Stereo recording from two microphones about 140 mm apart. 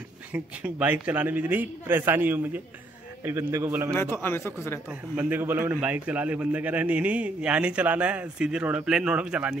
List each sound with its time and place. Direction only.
0.3 s a man's voice: 10° right (ahead or behind)
4.2 s speech: 15° left (ahead or behind)
5.1 s a man's voice: 15° right (ahead or behind)